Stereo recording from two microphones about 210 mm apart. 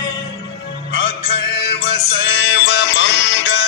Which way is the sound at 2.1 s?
55° left (ahead or behind).